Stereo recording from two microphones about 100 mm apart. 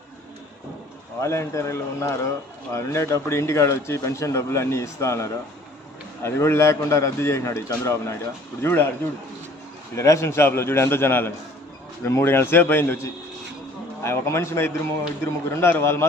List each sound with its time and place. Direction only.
1.2 s speech: 30° left (ahead or behind)
9.9 s speech: 30° left (ahead or behind)